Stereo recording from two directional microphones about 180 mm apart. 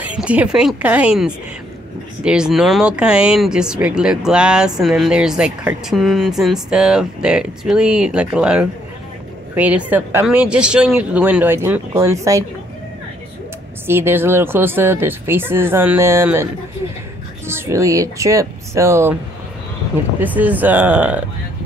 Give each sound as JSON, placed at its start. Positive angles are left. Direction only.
{"t": 0.0, "sound": "a woman's voice", "side_deg": -5}
{"t": 13.8, "sound": "a woman's voice", "side_deg": -15}
{"t": 17.5, "sound": "a woman's voice", "side_deg": -15}
{"t": 20.2, "sound": "a woman's voice", "side_deg": -10}